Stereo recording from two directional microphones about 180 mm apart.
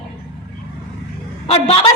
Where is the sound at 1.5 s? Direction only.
30° left (ahead or behind).